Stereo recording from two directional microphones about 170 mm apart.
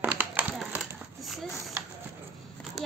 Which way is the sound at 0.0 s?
10° right (ahead or behind).